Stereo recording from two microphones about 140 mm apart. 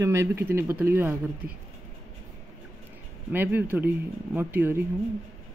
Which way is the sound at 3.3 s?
15° right (ahead or behind).